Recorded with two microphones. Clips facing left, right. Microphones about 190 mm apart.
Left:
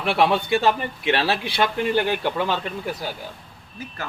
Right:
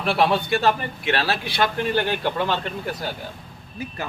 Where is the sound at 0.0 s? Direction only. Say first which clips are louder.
Even; 15° left (ahead or behind).